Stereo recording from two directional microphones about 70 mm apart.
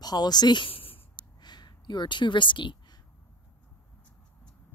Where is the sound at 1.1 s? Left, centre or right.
Left.